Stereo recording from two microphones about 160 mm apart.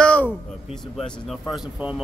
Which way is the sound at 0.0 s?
10° left (ahead or behind).